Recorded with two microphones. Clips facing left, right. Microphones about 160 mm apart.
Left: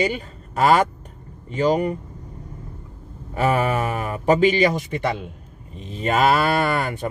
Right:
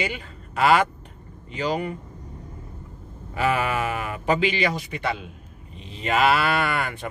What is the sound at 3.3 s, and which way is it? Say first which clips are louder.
Speech: left 3 dB; 45° left (ahead or behind).